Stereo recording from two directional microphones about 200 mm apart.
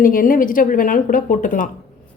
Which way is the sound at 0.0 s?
45° left (ahead or behind).